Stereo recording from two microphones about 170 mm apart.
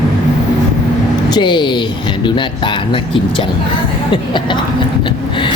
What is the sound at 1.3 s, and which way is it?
Speech, 25° left (ahead or behind).